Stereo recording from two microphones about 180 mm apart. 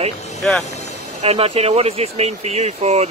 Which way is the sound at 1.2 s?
35° right (ahead or behind).